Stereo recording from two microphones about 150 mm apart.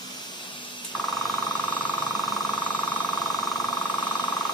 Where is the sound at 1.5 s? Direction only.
30° left (ahead or behind).